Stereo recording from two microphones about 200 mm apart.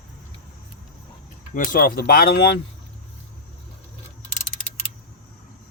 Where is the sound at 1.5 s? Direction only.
45° left (ahead or behind).